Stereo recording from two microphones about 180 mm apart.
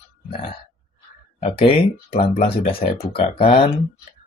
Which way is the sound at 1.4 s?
30° left (ahead or behind).